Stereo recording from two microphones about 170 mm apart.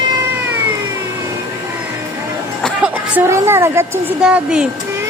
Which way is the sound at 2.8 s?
15° right (ahead or behind).